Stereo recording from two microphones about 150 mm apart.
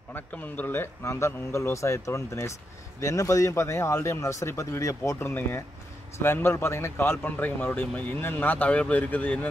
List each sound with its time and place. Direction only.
0.1 s speech: 10° left (ahead or behind)